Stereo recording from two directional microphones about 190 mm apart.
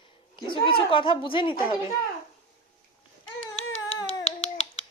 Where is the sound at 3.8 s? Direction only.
30° left (ahead or behind).